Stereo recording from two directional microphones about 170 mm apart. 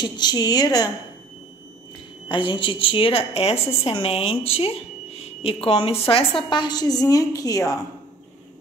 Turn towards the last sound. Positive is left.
turn(degrees=20)  # may be behind; listen again after turning